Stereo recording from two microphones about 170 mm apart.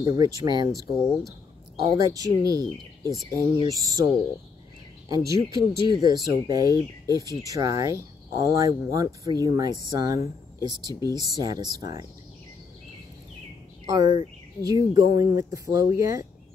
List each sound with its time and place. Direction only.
0.0 s speech: 20° right (ahead or behind)
1.8 s speech: 20° right (ahead or behind)
13.8 s speech: 25° right (ahead or behind)